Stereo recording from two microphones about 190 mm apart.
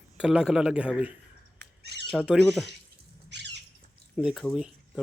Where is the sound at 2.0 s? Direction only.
5° right (ahead or behind).